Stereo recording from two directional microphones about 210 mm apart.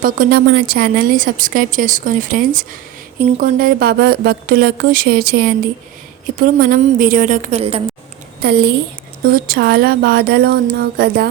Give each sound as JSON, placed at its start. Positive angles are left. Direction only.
{"t": 0.0, "sound": "a woman's voice", "side_deg": -45}
{"t": 8.4, "sound": "speech", "side_deg": -50}